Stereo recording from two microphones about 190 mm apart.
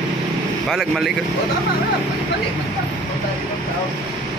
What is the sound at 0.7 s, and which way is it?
Speech, centre (ahead or behind).